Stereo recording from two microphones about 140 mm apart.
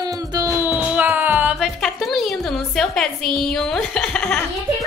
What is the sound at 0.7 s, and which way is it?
Music, 10° right (ahead or behind).